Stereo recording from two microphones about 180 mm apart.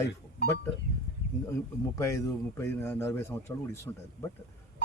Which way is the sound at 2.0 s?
15° left (ahead or behind).